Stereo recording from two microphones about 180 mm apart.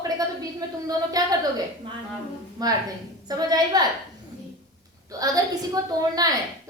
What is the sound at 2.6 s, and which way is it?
A woman's voice, 20° right (ahead or behind).